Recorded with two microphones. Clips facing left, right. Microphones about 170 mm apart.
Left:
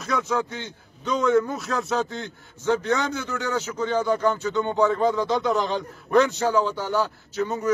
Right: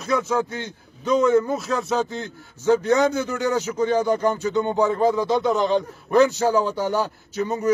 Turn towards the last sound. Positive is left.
turn(degrees=-10)  # may be behind; listen again after turning